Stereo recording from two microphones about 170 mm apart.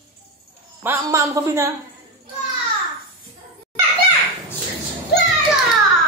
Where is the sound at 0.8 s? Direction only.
20° right (ahead or behind).